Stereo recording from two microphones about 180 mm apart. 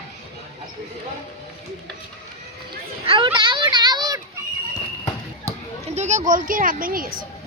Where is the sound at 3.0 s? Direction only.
30° right (ahead or behind).